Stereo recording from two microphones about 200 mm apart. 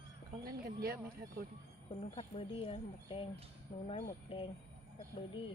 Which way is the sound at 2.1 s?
30° left (ahead or behind).